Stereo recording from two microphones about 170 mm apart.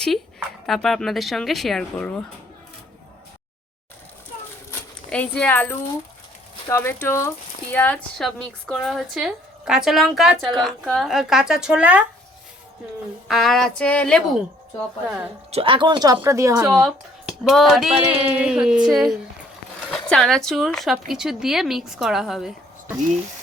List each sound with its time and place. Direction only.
0.0 s speech: centre (ahead or behind)
4.7 s zipper: 10° left (ahead or behind)
6.7 s speech: 15° left (ahead or behind); by 12.0 s 10° right (ahead or behind)
13.2 s speech: centre (ahead or behind)
15.5 s speech: 30° right (ahead or behind)
16.8 s speech: 5° right (ahead or behind)